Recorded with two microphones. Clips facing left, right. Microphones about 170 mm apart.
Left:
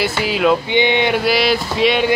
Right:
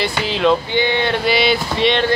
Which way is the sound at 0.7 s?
20° left (ahead or behind).